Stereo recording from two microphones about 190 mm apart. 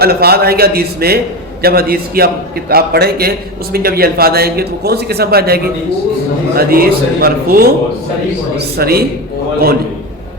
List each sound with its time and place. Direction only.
0.0 s a man's voice: 55° right (ahead or behind)